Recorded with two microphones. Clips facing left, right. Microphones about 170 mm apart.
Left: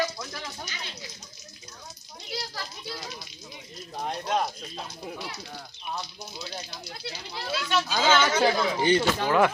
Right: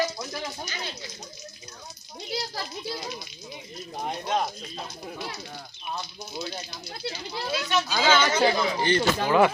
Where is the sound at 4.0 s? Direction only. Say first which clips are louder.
Even; 5° right (ahead or behind).